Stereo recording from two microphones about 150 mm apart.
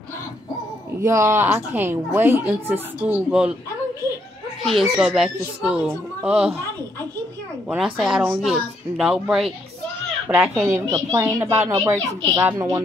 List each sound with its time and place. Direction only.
1.0 s speech: 20° right (ahead or behind)
4.6 s speech: centre (ahead or behind)
7.7 s speech: 5° right (ahead or behind)
10.9 s a woman's voice: 20° right (ahead or behind)